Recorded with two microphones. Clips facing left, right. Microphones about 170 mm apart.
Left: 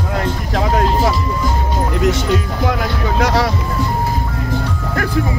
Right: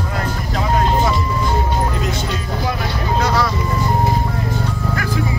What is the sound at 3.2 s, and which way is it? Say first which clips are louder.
Vehicle: left 3 dB; 85° left.